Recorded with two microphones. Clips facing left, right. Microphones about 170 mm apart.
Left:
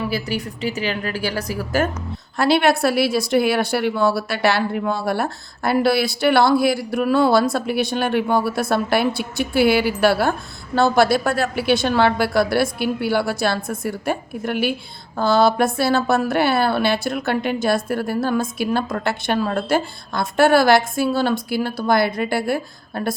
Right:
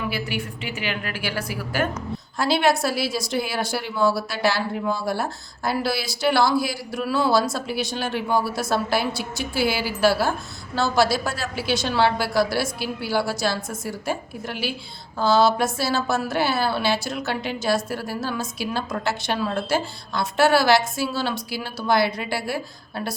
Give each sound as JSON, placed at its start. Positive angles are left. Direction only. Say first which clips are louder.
{"t": 0.1, "sound": "a woman's voice", "louder": "left 4 dB", "side_deg": 40}
{"t": 2.4, "sound": "a woman's voice", "louder": "left 4 dB", "side_deg": 60}